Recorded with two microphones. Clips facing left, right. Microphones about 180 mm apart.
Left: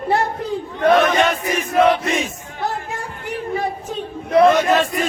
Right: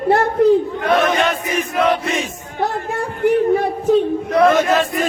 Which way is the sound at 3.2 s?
60° right (ahead or behind).